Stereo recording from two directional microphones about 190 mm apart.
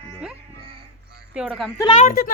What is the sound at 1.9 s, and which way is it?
Speech, 45° left (ahead or behind).